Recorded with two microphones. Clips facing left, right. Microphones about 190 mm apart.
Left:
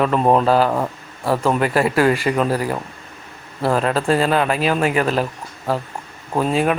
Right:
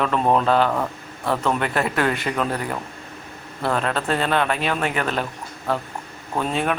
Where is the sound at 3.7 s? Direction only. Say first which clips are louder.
Left 5 dB; 5° left (ahead or behind).